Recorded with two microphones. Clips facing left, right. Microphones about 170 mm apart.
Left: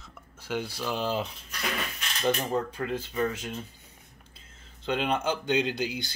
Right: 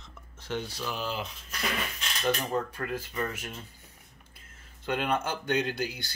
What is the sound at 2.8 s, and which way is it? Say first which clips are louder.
Speech: left 4 dB; 20° left (ahead or behind).